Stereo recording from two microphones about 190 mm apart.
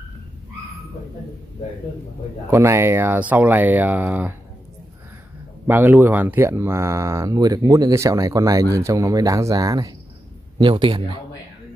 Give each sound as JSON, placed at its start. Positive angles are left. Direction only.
{"t": 2.5, "sound": "speech", "side_deg": -15}
{"t": 5.7, "sound": "a man's voice", "side_deg": -10}